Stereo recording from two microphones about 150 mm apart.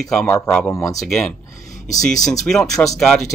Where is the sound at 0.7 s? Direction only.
20° left (ahead or behind).